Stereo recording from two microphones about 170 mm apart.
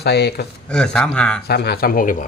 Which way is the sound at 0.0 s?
75° left (ahead or behind).